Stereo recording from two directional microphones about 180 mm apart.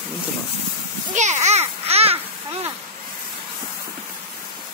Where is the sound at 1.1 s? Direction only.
40° right (ahead or behind).